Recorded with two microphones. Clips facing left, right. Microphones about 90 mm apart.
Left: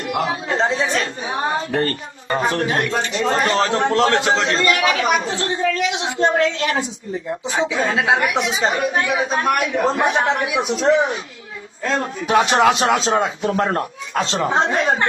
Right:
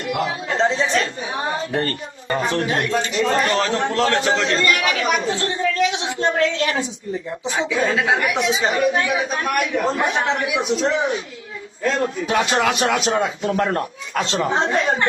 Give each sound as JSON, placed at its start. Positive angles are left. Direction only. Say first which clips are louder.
{"t": 0.1, "sound": "speech", "louder": "left 2 dB", "side_deg": 35}